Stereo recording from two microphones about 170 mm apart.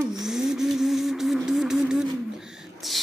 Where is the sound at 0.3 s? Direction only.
5° right (ahead or behind).